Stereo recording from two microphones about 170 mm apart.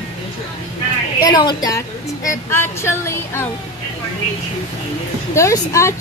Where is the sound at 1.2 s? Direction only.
25° left (ahead or behind).